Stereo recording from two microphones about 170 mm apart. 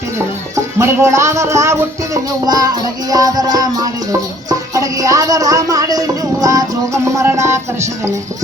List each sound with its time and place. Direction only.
0.5 s music: 15° right (ahead or behind)